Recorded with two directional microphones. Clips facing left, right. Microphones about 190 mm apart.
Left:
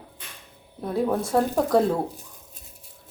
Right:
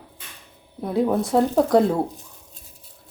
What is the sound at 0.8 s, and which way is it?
Speech, 15° right (ahead or behind).